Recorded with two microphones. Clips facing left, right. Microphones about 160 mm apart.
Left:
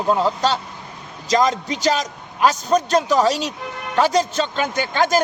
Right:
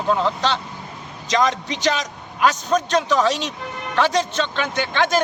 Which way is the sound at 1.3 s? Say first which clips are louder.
Left 2 dB; 40° left (ahead or behind).